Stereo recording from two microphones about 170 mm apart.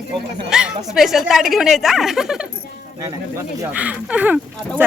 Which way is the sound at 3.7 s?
10° right (ahead or behind).